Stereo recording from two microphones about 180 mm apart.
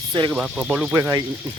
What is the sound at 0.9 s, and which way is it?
Speech, 15° right (ahead or behind).